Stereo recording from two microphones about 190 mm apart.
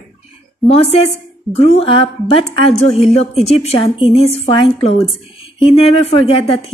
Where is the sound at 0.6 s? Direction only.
Centre (ahead or behind).